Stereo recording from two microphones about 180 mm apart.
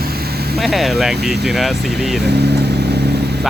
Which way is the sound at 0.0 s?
60° right (ahead or behind).